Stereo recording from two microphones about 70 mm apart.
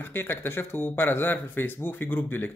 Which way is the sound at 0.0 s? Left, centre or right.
Left.